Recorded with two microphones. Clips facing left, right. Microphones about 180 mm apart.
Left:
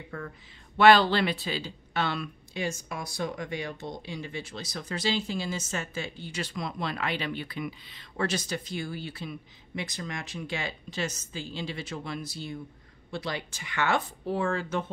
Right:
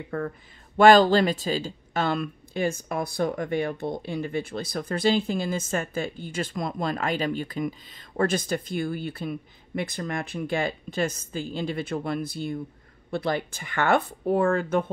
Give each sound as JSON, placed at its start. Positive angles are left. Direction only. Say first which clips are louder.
{"t": 0.1, "sound": "speech", "louder": "right 9 dB", "side_deg": -55}
{"t": 0.7, "sound": "speech", "louder": "right 4 dB", "side_deg": -45}